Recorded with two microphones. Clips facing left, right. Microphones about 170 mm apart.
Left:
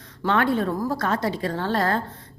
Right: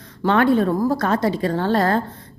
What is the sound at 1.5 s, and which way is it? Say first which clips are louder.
Speech: right 6 dB; 40° right (ahead or behind).